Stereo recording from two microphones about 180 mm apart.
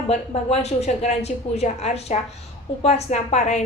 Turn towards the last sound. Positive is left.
turn(degrees=40)  # may be behind; listen again after turning